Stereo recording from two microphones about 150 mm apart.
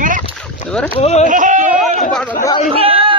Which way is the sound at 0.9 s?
45° left (ahead or behind).